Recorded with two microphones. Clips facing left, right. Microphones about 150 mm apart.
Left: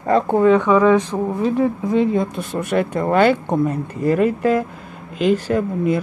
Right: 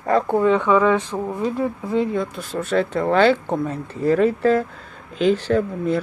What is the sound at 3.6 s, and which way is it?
Speech, 10° left (ahead or behind).